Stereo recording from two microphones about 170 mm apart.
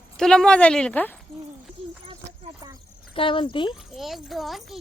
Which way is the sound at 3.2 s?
30° left (ahead or behind).